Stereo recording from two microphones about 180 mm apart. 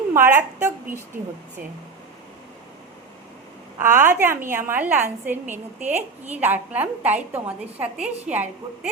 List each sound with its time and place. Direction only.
0.1 s a woman's voice: 15° right (ahead or behind)
3.8 s a woman's voice: 10° right (ahead or behind)